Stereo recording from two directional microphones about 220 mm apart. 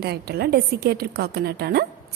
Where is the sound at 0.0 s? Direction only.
45° right (ahead or behind).